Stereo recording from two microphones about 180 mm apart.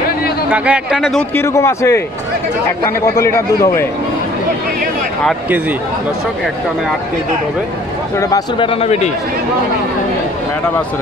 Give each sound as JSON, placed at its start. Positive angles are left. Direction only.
{"t": 0.5, "sound": "a man's voice", "side_deg": -5}
{"t": 1.3, "sound": "a man's voice", "side_deg": 15}
{"t": 3.2, "sound": "a man's voice", "side_deg": 15}
{"t": 8.2, "sound": "speech", "side_deg": 20}
{"t": 8.6, "sound": "a man's voice", "side_deg": 35}